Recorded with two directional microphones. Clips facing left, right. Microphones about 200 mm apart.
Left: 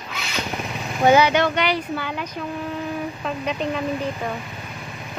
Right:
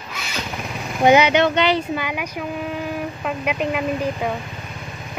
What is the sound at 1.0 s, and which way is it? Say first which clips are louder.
Speech: right 2 dB; 20° right (ahead or behind).